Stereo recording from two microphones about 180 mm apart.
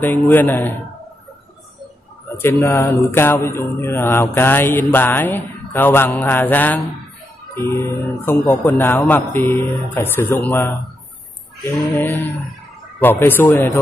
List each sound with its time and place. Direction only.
0.0 s mantra: 10° left (ahead or behind)
2.2 s mantra: 10° left (ahead or behind)
13.0 s mantra: 10° left (ahead or behind)